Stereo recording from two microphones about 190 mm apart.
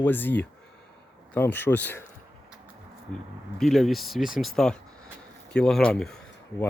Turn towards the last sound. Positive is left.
turn(degrees=5)  # may be behind; listen again after turning